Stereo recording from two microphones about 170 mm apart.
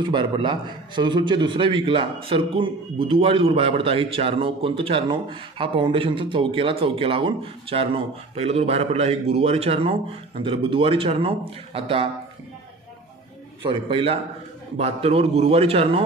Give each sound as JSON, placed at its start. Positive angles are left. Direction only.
{"t": 0.1, "sound": "a man's voice", "side_deg": -30}
{"t": 13.7, "sound": "a man's voice", "side_deg": -30}